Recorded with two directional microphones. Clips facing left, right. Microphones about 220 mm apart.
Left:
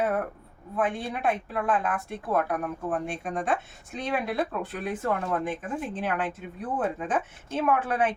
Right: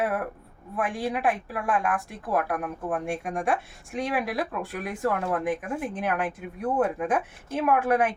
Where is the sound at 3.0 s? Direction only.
10° right (ahead or behind).